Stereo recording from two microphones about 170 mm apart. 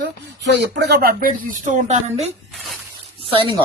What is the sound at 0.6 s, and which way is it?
A woman's voice, 75° right (ahead or behind).